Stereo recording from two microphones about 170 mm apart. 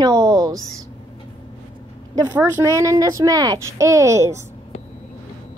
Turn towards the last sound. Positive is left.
turn(degrees=-15)  # may be behind; listen again after turning